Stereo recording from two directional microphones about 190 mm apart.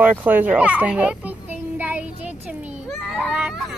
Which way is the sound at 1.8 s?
10° right (ahead or behind).